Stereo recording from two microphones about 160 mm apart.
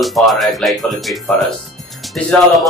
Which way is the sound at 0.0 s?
Centre (ahead or behind).